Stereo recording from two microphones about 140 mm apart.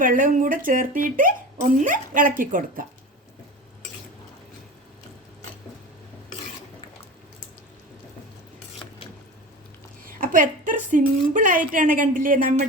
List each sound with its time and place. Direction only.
0.0 s speech: 80° right
10.1 s speech: 75° right (ahead or behind)